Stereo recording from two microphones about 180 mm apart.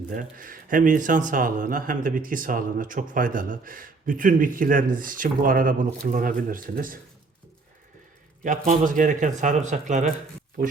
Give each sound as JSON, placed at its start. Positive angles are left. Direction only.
{"t": 0.1, "sound": "speech", "side_deg": -50}
{"t": 8.4, "sound": "speech", "side_deg": -45}